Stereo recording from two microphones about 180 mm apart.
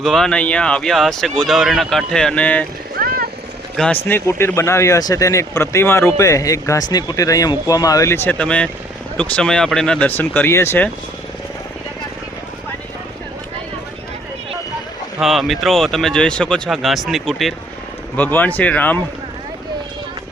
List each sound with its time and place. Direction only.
0.0 s speech: centre (ahead or behind)
3.8 s speech: 5° left (ahead or behind)
15.2 s speech: centre (ahead or behind)